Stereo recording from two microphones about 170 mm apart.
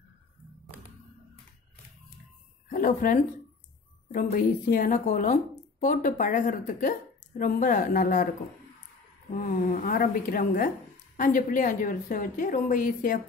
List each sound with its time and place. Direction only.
2.7 s speech: 55° left (ahead or behind)
9.3 s speech: 50° left (ahead or behind)